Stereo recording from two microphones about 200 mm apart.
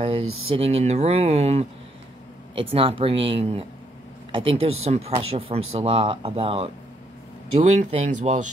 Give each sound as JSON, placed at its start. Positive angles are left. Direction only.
{"t": 0.5, "sound": "speech", "side_deg": -30}